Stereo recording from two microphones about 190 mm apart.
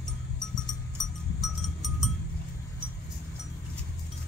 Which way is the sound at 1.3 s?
Centre (ahead or behind).